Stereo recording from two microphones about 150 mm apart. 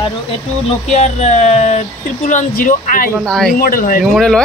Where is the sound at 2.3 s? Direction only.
60° left (ahead or behind).